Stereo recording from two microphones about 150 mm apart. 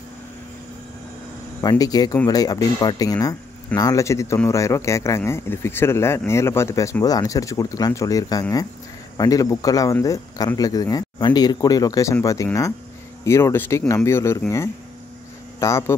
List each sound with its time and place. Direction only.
1.6 s speech: 25° left (ahead or behind)
15.6 s speech: 20° left (ahead or behind)